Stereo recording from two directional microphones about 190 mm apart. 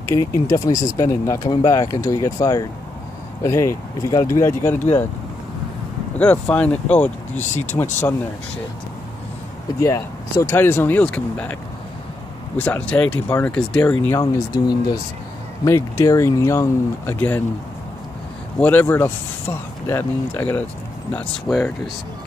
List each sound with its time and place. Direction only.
0.1 s speech: 15° left (ahead or behind)
6.1 s speech: 10° left (ahead or behind)
9.8 s speech: 15° left (ahead or behind)
12.5 s speech: 10° left (ahead or behind)
14.5 s speech: 20° left (ahead or behind)
18.6 s speech: 10° left (ahead or behind)